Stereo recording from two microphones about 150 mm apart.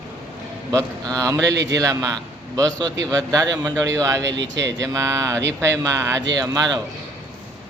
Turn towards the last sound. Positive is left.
turn(degrees=-25)  # may be behind; listen again after turning